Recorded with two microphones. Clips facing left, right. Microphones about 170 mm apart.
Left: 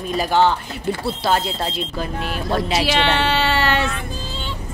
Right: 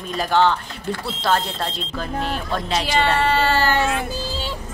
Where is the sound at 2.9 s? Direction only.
80° left.